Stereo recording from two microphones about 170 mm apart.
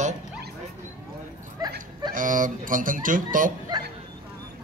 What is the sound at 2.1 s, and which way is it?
Speech, 50° right (ahead or behind).